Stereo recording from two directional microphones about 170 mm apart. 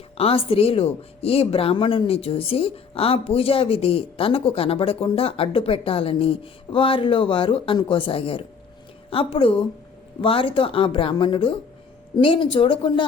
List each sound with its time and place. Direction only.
0.2 s a woman's voice: 35° left (ahead or behind)